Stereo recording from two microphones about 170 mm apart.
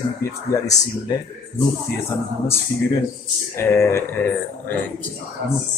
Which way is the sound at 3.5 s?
15° left (ahead or behind).